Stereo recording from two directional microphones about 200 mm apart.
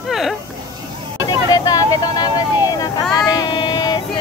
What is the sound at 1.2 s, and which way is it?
Vehicle, 20° left (ahead or behind).